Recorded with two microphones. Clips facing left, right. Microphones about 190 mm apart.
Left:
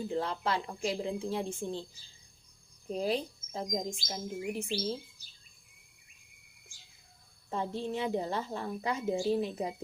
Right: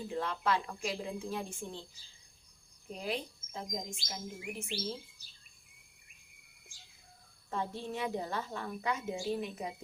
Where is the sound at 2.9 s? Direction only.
35° left (ahead or behind).